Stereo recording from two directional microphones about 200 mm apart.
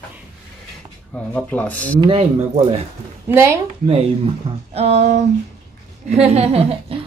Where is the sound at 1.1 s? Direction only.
5° left (ahead or behind).